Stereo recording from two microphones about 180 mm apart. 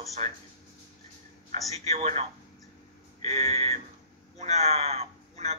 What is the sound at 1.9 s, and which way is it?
A man's voice, 35° right (ahead or behind).